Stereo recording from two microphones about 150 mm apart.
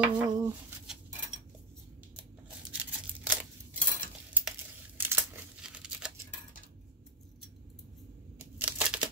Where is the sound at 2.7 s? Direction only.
10° right (ahead or behind).